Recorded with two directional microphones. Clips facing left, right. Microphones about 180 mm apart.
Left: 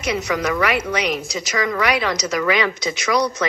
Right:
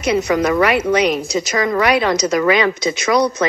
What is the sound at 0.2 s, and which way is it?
Speech, 35° right (ahead or behind).